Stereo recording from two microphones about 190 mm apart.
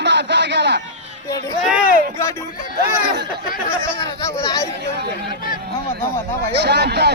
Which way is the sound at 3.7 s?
15° left (ahead or behind).